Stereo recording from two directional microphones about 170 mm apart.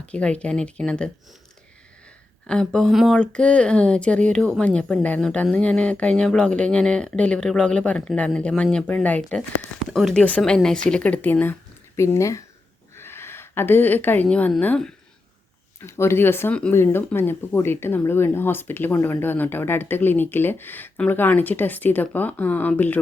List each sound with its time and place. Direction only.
0.0 s speech: 5° left (ahead or behind)
2.5 s a woman's voice: 5° left (ahead or behind)